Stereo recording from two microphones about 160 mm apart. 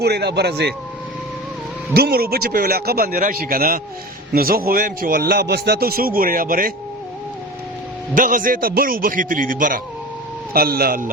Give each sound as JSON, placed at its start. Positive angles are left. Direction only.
{"t": 0.0, "sound": "speech", "side_deg": -90}
{"t": 1.9, "sound": "speech", "side_deg": -70}
{"t": 3.2, "sound": "a man's voice", "side_deg": -60}
{"t": 8.1, "sound": "a man's voice", "side_deg": -60}
{"t": 10.5, "sound": "speech", "side_deg": -70}